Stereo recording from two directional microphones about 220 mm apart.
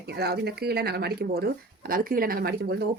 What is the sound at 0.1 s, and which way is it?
Speech, 45° right (ahead or behind).